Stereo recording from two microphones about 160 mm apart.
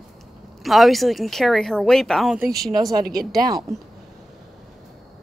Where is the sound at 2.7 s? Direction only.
25° right (ahead or behind).